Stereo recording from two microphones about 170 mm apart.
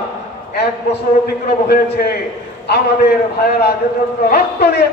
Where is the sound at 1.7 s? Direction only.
70° left (ahead or behind).